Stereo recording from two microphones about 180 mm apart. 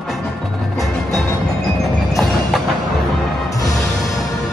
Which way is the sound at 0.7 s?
Centre (ahead or behind).